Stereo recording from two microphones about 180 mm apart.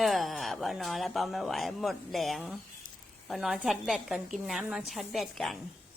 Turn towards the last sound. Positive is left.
turn(degrees=0)  # may be behind; listen again after turning